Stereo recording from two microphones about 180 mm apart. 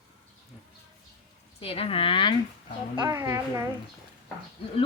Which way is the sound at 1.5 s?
30° left (ahead or behind).